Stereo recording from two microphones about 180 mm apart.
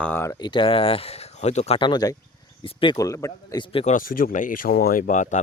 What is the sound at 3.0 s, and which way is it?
Speech, 20° left (ahead or behind).